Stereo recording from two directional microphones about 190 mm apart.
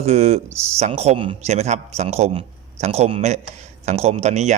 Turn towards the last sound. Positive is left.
turn(degrees=-35)  # may be behind; listen again after turning